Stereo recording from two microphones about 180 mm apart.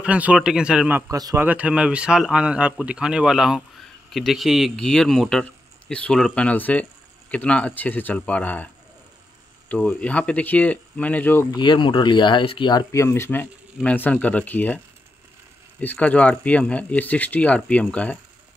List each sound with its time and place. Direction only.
0.0 s speech: 5° right (ahead or behind); by 8.6 s 10° left (ahead or behind)
9.7 s speech: 10° left (ahead or behind)
11.5 s speech: 25° left (ahead or behind); by 14.8 s 10° left (ahead or behind)
15.8 s speech: 10° left (ahead or behind)